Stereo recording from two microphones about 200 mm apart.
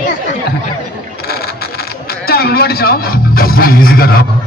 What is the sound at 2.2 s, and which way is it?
A man's voice, 50° left (ahead or behind).